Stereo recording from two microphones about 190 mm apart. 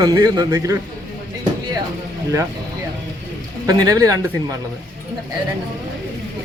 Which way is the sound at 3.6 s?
20° right (ahead or behind).